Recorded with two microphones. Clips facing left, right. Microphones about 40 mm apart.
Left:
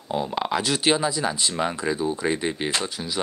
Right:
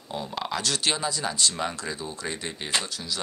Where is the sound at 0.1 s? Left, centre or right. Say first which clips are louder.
Left 6 dB; centre.